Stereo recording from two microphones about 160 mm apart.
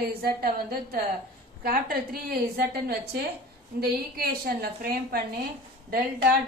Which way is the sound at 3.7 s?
75° right (ahead or behind).